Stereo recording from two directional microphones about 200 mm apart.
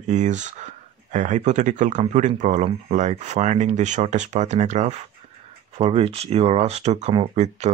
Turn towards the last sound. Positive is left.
turn(degrees=-30)  # may be behind; listen again after turning